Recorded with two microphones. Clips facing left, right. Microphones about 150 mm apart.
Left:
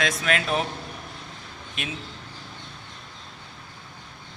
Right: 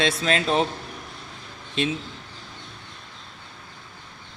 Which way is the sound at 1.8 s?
30° right (ahead or behind).